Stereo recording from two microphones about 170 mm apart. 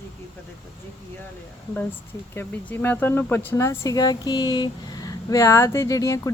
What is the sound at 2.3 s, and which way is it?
Speech, 10° left (ahead or behind).